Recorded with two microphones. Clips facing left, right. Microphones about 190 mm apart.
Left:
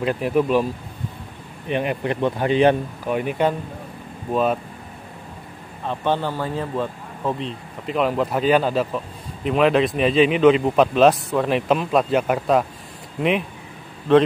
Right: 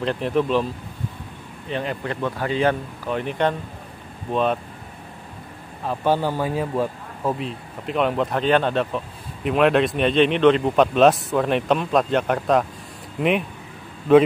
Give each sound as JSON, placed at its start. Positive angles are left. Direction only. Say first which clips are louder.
{"t": 0.0, "sound": "a man's voice", "louder": "left 2 dB", "side_deg": 10}
{"t": 1.7, "sound": "a man's voice", "louder": "left 4 dB", "side_deg": 15}
{"t": 5.9, "sound": "speech", "louder": "right 1 dB", "side_deg": -10}